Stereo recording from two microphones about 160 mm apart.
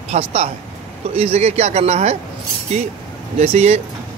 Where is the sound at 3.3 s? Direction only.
45° right (ahead or behind).